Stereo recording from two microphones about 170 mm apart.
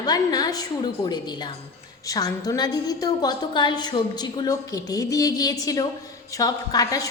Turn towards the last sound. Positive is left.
turn(degrees=20)  # may be behind; listen again after turning